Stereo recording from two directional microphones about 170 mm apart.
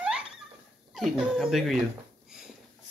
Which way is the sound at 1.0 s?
Centre (ahead or behind).